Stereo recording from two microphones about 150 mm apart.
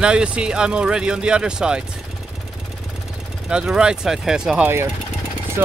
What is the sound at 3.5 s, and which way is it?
Speech, 5° right (ahead or behind).